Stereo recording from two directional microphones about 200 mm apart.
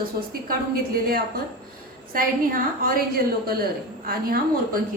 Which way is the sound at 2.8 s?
45° right (ahead or behind).